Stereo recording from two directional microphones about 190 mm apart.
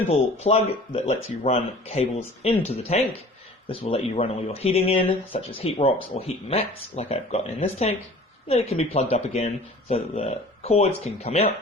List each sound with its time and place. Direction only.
0.1 s speech: 35° left (ahead or behind)